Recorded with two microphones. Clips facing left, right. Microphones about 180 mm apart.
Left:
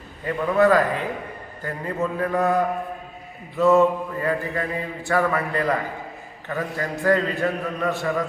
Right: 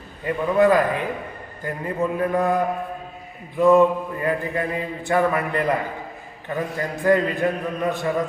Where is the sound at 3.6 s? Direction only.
15° right (ahead or behind).